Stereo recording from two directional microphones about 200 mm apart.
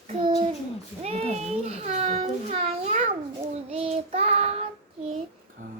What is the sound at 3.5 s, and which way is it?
Child singing, 30° right (ahead or behind).